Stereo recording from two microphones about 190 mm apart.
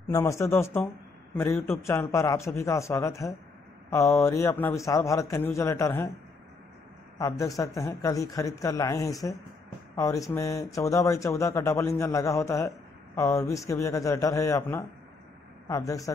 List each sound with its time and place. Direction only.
0.1 s speech: 15° left (ahead or behind)
7.2 s speech: 15° left (ahead or behind)